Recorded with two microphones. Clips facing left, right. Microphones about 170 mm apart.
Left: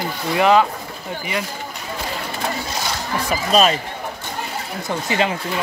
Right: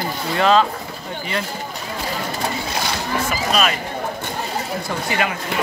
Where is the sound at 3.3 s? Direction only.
30° left (ahead or behind).